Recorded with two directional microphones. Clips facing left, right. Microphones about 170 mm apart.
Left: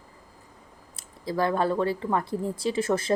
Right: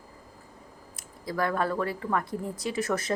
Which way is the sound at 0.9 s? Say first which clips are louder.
Left 3 dB; 25° left (ahead or behind).